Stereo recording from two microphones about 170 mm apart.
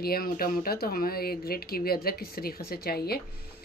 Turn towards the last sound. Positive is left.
turn(degrees=65)  # may be behind; listen again after turning